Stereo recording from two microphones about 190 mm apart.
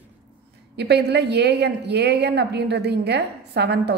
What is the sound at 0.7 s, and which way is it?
A woman's voice, 60° right (ahead or behind).